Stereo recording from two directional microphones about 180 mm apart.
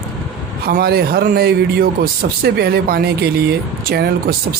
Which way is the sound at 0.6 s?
60° right (ahead or behind).